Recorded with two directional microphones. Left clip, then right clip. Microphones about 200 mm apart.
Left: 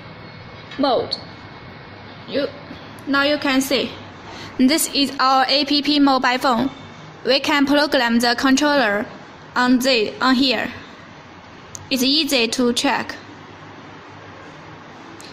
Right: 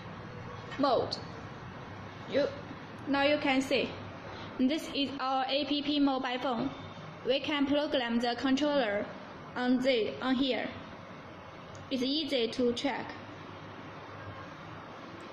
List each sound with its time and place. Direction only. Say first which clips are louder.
3.1 s a woman's voice: left 10 dB; 55° left (ahead or behind)
11.9 s a woman's voice: left 14 dB; 60° left (ahead or behind)